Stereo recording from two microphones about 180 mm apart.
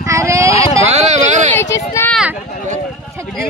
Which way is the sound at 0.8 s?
40° right (ahead or behind).